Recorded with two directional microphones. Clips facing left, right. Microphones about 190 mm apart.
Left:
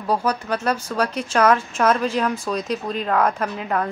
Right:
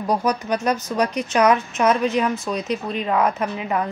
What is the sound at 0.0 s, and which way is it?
Speech, 15° right (ahead or behind).